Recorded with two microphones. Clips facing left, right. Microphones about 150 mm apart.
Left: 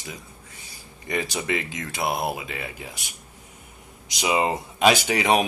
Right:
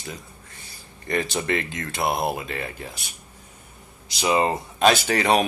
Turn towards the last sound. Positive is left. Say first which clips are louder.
# right 1 dB
turn(degrees=10)  # may be behind; listen again after turning